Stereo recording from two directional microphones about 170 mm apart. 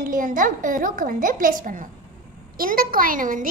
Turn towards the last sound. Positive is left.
turn(degrees=-50)  # may be behind; listen again after turning